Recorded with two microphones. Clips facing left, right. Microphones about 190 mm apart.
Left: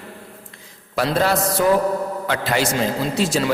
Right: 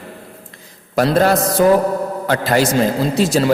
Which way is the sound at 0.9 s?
45° right (ahead or behind).